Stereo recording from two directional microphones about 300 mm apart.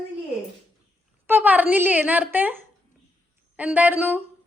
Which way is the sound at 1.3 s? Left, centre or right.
Centre.